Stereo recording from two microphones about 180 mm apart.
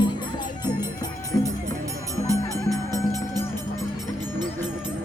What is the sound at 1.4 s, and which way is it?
Music, 15° right (ahead or behind).